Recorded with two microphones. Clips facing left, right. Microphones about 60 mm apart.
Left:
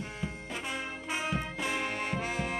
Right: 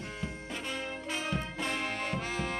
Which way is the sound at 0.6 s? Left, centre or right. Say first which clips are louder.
Even; centre.